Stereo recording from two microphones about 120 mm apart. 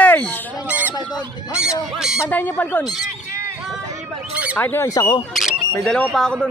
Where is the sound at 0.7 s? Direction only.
15° right (ahead or behind).